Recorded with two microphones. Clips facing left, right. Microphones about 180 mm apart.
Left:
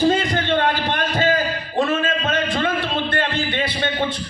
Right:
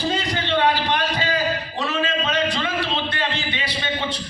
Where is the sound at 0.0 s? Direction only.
50° left (ahead or behind).